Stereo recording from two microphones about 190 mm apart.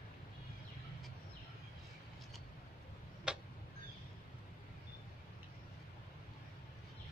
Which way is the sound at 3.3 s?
5° right (ahead or behind).